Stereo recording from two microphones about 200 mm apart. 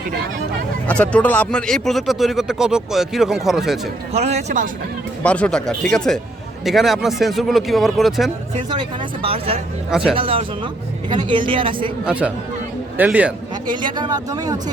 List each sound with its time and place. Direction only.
0.9 s speech: 5° left (ahead or behind)
4.1 s speech: 35° right (ahead or behind)
5.2 s speech: 5° left (ahead or behind)
9.2 s speech: 30° right (ahead or behind)
9.9 s speech: 5° right (ahead or behind)
10.2 s speech: 25° right (ahead or behind)
12.0 s a man's voice: 5° right (ahead or behind)
13.7 s speech: 20° right (ahead or behind)